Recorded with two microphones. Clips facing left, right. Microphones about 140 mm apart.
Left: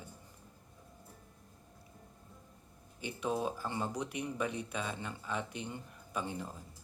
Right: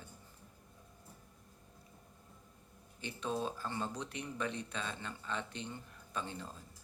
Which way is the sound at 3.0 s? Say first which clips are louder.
Left 3 dB; 10° left (ahead or behind).